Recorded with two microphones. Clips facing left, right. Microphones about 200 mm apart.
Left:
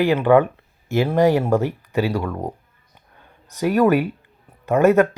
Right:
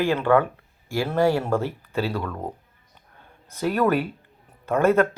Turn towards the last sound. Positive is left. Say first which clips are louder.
# left 4 dB
turn(degrees=15)  # may be behind; listen again after turning